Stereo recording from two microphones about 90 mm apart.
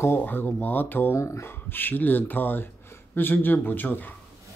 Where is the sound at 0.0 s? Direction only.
25° left (ahead or behind).